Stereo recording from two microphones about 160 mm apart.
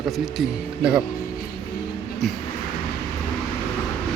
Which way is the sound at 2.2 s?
5° left (ahead or behind).